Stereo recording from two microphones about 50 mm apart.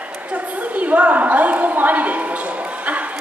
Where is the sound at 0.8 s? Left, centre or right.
Right.